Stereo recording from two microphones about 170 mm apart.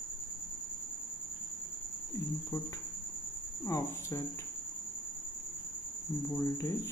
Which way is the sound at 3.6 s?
15° left (ahead or behind).